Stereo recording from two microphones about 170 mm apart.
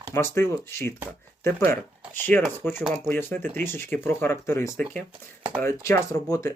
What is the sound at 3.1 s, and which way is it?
Speech, 10° left (ahead or behind).